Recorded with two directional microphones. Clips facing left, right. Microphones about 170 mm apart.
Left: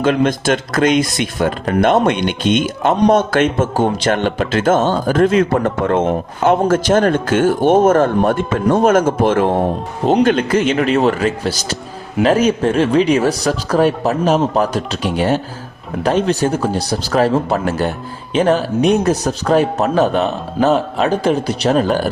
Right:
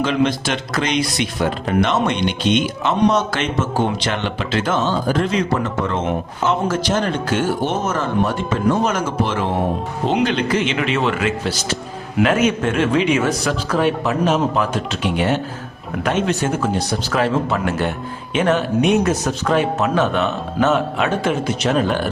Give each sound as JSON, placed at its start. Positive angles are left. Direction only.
{"t": 0.0, "sound": "a man's voice", "side_deg": 50}